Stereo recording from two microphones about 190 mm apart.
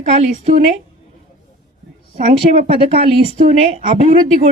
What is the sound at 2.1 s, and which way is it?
Speech, 35° right (ahead or behind).